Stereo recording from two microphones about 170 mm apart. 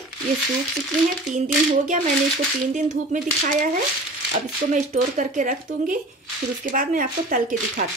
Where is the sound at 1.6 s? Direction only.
50° right (ahead or behind).